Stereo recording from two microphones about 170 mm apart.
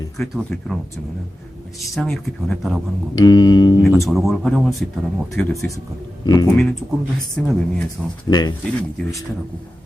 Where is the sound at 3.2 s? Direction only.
25° left (ahead or behind).